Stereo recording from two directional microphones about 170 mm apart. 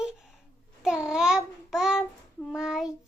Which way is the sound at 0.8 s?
5° right (ahead or behind).